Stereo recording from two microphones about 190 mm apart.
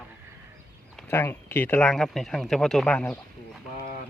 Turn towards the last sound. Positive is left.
turn(degrees=5)  # may be behind; listen again after turning